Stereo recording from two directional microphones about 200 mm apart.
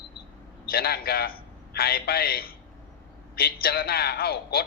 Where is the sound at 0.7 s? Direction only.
50° left (ahead or behind).